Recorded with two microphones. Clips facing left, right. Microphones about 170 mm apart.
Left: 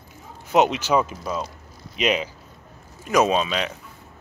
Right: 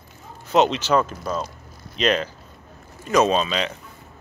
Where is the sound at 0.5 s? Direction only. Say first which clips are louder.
Right 1 dB; 10° left (ahead or behind).